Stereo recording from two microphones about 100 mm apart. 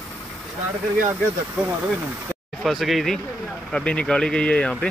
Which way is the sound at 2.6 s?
Centre (ahead or behind).